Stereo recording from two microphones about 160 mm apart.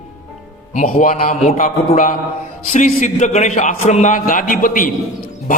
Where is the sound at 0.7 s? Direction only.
55° left (ahead or behind).